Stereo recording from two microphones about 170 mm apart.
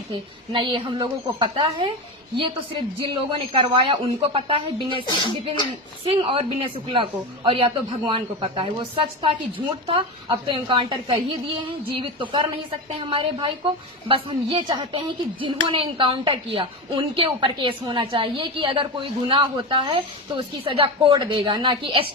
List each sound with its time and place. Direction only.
0.5 s a woman's voice: 30° right (ahead or behind)
6.1 s a woman's voice: 30° right (ahead or behind)